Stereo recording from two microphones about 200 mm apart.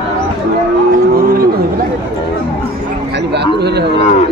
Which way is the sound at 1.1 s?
50° right (ahead or behind).